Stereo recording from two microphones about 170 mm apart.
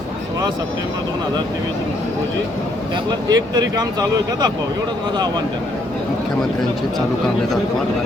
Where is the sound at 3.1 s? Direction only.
25° right (ahead or behind).